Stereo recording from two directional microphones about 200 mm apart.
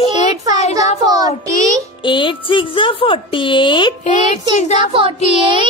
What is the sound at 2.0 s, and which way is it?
A woman's voice, 25° left (ahead or behind).